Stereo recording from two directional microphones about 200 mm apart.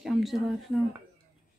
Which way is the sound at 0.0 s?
Centre (ahead or behind).